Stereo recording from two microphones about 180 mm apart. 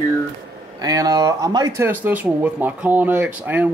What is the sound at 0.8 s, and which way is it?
Speech, 20° right (ahead or behind).